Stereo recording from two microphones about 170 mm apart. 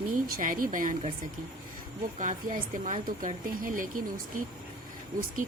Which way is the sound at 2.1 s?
50° right (ahead or behind).